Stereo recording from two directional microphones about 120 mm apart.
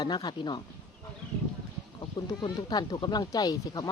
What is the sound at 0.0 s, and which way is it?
Speech, 35° left (ahead or behind).